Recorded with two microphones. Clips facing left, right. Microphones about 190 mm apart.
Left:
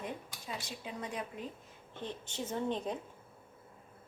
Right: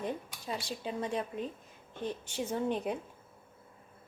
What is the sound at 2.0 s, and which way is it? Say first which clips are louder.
A woman's voice: right 4 dB; 10° right (ahead or behind).